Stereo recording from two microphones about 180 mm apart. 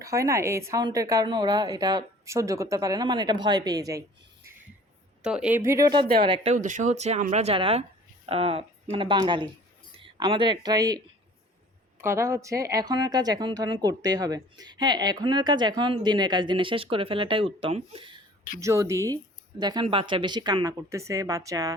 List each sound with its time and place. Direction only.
0.0 s speech: 15° right (ahead or behind)
5.2 s speech: 5° right (ahead or behind); by 6.5 s 25° right (ahead or behind)
6.5 s speech: 40° right (ahead or behind)
18.6 s speech: 15° right (ahead or behind)